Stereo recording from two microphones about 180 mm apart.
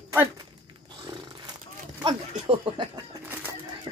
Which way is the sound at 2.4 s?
30° right (ahead or behind).